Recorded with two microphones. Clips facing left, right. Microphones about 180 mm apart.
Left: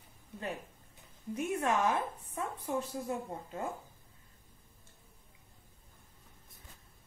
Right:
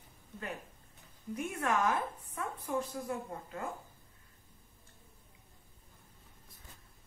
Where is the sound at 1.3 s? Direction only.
25° left (ahead or behind).